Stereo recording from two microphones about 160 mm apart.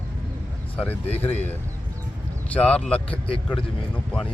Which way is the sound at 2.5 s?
10° left (ahead or behind).